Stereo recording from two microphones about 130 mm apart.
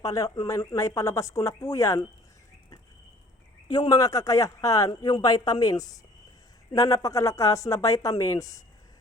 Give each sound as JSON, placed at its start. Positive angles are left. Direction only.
{"t": 0.0, "sound": "speech", "side_deg": 30}
{"t": 3.7, "sound": "speech", "side_deg": 30}